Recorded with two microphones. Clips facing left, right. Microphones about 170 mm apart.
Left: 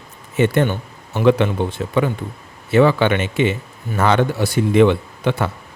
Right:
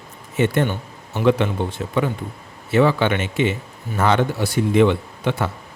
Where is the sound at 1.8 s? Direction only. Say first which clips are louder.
Left 2 dB; 80° left.